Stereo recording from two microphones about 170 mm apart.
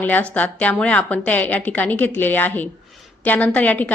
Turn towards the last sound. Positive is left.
turn(degrees=10)  # may be behind; listen again after turning